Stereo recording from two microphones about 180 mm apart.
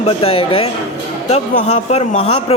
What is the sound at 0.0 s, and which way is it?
A man's voice, 30° left (ahead or behind).